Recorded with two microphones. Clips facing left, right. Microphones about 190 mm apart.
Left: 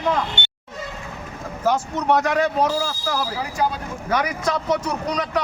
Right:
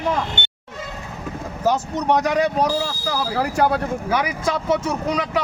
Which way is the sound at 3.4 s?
65° right (ahead or behind).